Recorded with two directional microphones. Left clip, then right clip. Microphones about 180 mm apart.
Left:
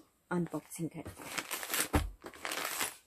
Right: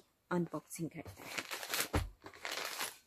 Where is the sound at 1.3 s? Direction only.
Centre (ahead or behind).